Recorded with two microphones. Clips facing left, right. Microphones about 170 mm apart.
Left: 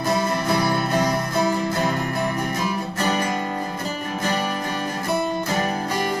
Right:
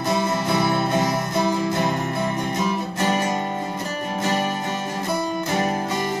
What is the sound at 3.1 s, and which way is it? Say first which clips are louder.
Guitar: even; 25° right (ahead or behind).